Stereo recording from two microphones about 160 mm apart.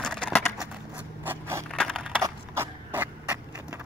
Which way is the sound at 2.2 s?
15° right (ahead or behind).